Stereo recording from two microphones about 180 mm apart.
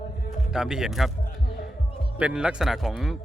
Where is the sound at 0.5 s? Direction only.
5° right (ahead or behind).